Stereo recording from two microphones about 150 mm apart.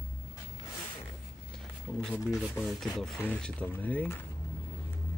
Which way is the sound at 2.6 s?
Centre (ahead or behind).